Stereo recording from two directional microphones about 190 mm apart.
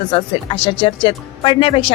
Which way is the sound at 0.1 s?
30° left (ahead or behind).